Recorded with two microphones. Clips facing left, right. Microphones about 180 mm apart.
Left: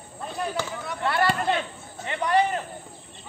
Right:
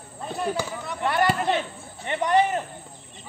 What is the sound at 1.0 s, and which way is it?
Speech, 20° right (ahead or behind).